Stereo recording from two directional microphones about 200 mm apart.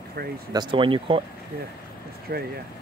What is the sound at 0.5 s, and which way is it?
Speech, 20° right (ahead or behind).